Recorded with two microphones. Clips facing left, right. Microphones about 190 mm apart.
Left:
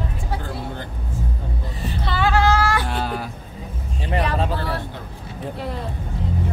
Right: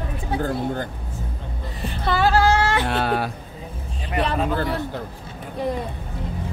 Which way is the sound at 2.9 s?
70° right (ahead or behind).